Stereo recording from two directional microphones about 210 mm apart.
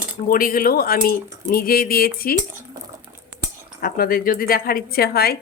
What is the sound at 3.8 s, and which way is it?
A woman's voice, 45° left (ahead or behind).